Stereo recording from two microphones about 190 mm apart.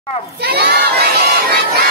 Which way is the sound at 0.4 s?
55° right (ahead or behind).